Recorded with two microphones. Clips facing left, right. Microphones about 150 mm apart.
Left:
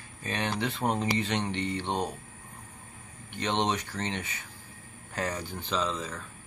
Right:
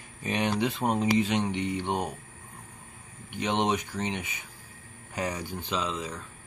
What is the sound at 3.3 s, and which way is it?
Speech, 10° right (ahead or behind).